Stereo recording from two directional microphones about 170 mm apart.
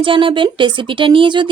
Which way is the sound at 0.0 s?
30° right (ahead or behind).